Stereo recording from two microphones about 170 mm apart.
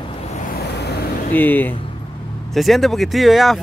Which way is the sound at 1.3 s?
10° left (ahead or behind).